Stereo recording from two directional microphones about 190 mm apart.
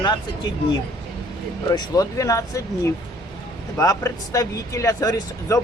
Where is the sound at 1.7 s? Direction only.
20° left (ahead or behind).